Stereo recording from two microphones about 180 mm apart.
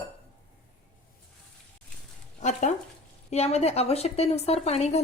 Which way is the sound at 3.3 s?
35° left (ahead or behind).